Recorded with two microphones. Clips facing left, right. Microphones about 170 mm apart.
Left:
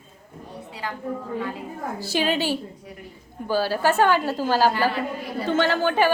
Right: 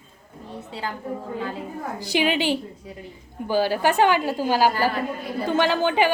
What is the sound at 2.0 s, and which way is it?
A woman's voice, 15° right (ahead or behind).